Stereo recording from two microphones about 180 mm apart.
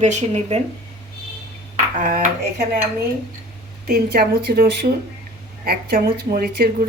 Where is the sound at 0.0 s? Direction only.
40° right (ahead or behind).